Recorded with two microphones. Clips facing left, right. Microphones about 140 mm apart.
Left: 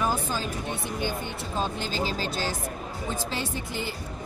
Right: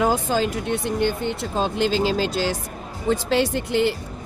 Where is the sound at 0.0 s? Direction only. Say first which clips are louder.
Right 8 dB; 90° right.